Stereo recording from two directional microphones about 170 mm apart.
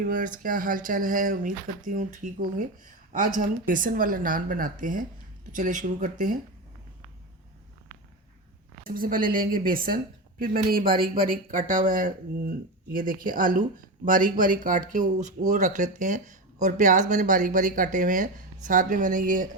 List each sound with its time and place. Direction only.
0.0 s speech: 50° right (ahead or behind)
8.8 s a woman's voice: 55° right (ahead or behind)